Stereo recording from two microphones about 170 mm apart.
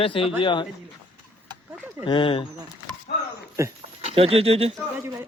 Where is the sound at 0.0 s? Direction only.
35° left (ahead or behind).